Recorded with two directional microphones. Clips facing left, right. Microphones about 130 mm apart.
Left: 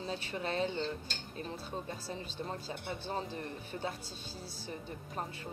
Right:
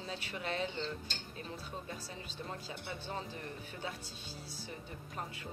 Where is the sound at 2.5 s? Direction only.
35° left (ahead or behind).